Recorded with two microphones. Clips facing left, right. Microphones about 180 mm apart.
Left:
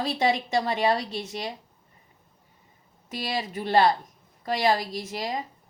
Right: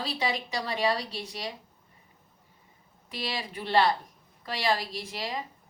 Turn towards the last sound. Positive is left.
turn(degrees=45)  # may be behind; listen again after turning